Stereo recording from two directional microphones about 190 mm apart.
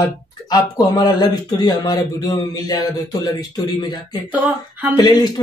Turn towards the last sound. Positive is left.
turn(degrees=20)  # may be behind; listen again after turning